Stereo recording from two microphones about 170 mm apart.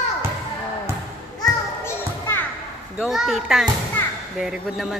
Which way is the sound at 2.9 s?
Centre (ahead or behind).